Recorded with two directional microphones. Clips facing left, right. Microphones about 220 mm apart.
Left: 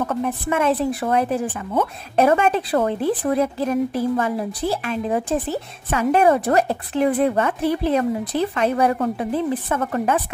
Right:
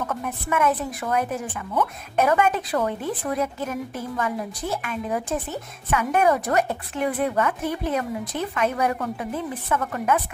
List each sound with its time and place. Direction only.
0.0 s a woman's voice: 30° left (ahead or behind)